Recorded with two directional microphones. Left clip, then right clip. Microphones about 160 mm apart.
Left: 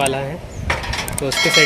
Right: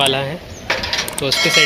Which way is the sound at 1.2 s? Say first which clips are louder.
Right 4 dB; 15° left (ahead or behind).